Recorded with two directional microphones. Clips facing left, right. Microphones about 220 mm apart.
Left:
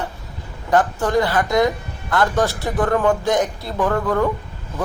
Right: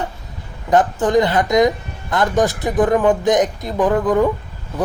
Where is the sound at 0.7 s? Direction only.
20° right (ahead or behind).